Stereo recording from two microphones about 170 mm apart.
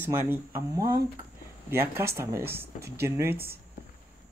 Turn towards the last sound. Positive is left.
turn(degrees=-15)  # may be behind; listen again after turning